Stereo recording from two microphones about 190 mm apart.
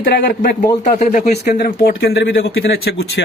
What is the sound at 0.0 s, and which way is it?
Speech, 55° left (ahead or behind).